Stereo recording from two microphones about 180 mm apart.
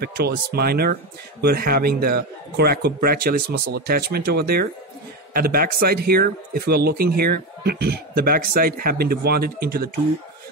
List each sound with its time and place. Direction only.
0.0 s speech: 60° right (ahead or behind)